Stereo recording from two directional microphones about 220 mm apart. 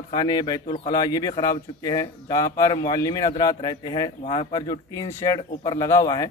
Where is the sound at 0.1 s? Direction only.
20° left (ahead or behind).